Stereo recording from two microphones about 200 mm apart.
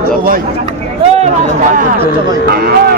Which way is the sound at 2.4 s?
50° right (ahead or behind).